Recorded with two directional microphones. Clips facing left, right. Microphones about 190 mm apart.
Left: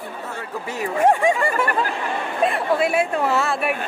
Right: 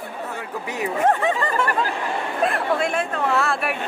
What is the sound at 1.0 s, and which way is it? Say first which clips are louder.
Speech: left 3 dB; 10° left (ahead or behind).